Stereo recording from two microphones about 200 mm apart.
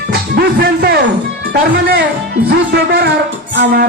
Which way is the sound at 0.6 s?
50° right (ahead or behind).